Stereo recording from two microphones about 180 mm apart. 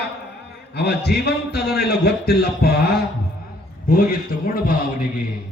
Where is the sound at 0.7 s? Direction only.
65° left (ahead or behind).